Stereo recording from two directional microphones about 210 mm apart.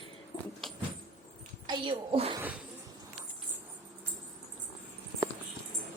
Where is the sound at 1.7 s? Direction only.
25° right (ahead or behind).